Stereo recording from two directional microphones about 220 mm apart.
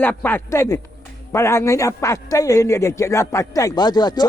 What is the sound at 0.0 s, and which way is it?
A man's voice, 10° left (ahead or behind).